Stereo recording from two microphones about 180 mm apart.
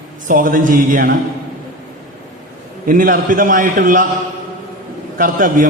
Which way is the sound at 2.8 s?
50° right (ahead or behind).